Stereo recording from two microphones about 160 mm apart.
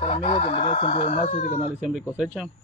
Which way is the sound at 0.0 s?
35° left (ahead or behind).